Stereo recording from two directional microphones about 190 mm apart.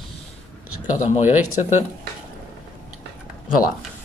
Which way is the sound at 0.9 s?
35° left (ahead or behind).